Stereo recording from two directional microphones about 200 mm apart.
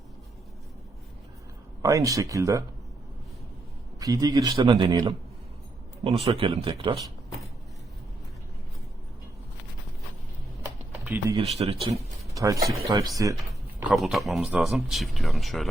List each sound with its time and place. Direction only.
1.8 s speech: 15° right (ahead or behind)
4.0 s speech: 20° right (ahead or behind)
11.0 s speech: 10° right (ahead or behind)
11.3 s speech: 30° right (ahead or behind)
11.9 s speech: 15° right (ahead or behind)
13.9 s speech: centre (ahead or behind)